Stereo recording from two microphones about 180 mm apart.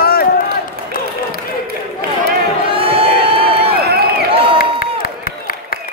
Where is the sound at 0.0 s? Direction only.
60° left (ahead or behind).